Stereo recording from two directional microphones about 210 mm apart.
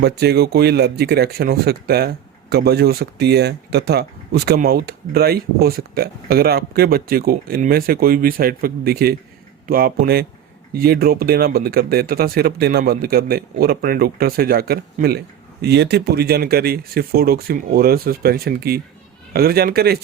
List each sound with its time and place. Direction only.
0.0 s speech: 50° right (ahead or behind)